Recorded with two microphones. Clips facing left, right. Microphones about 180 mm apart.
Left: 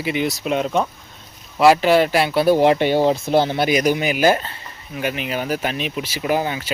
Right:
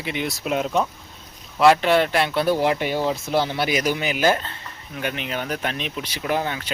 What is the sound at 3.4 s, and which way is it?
Speech, 50° left (ahead or behind).